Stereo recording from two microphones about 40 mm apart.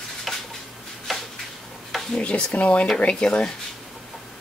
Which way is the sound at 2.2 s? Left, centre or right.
Left.